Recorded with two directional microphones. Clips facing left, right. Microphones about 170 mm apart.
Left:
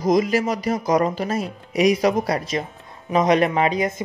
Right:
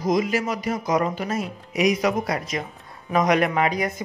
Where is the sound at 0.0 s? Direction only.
40° left (ahead or behind).